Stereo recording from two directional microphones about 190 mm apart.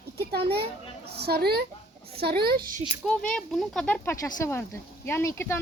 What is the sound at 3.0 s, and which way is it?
Speech, 5° left (ahead or behind).